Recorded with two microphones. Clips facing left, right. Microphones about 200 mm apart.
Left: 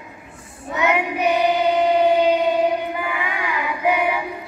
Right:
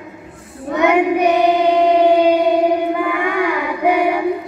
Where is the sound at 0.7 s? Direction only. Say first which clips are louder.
Right 7 dB; 55° right (ahead or behind).